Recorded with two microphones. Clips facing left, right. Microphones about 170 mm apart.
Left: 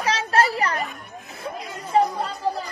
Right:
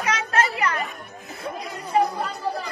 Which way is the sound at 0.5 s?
35° left (ahead or behind).